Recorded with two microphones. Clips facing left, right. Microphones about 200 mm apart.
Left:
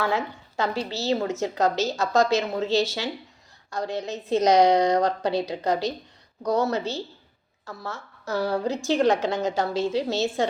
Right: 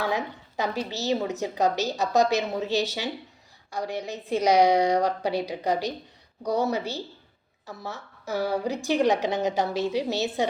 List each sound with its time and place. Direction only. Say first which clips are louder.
0.0 s a woman's voice: left 2 dB; 15° right (ahead or behind)